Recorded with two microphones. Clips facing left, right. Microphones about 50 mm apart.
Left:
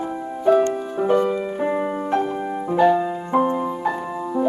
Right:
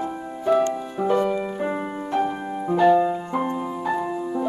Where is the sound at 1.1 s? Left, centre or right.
Centre.